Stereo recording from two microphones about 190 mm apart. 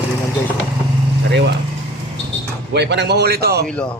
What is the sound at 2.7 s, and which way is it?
Speech, 65° right (ahead or behind).